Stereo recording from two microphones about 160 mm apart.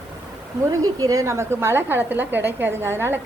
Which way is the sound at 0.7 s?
20° right (ahead or behind).